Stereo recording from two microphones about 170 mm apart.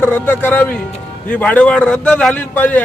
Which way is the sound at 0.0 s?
10° left (ahead or behind).